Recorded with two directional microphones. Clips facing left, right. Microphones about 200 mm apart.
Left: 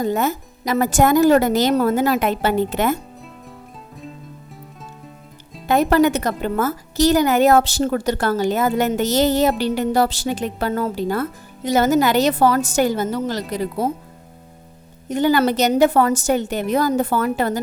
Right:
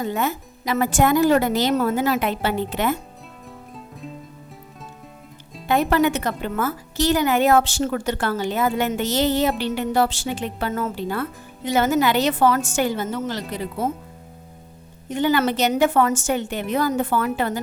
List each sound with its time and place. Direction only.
0.0 s speech: 40° left (ahead or behind)
5.6 s speech: 40° left (ahead or behind)
15.1 s speech: 40° left (ahead or behind)